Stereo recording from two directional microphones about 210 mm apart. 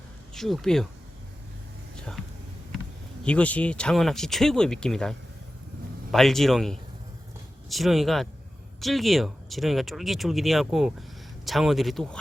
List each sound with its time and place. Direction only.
0.3 s speech: centre (ahead or behind)
2.0 s a sound: 5° left (ahead or behind)
3.2 s speech: 5° left (ahead or behind)